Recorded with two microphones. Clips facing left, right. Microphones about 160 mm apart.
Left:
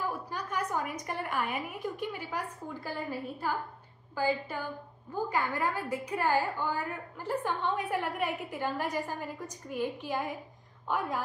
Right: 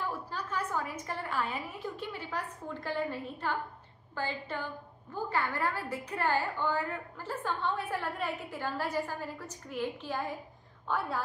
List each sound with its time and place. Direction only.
0.3 s a woman's voice: 15° left (ahead or behind)